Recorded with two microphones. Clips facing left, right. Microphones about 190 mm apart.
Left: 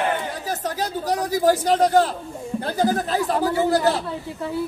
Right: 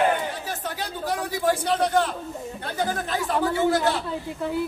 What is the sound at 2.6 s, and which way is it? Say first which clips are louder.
Speech: left 6 dB; 35° left (ahead or behind).